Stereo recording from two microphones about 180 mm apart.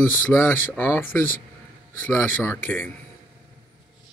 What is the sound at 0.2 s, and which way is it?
Speech, 10° left (ahead or behind).